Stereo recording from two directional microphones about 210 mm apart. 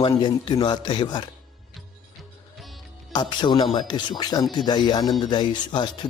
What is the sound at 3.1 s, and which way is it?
Speech, 20° left (ahead or behind).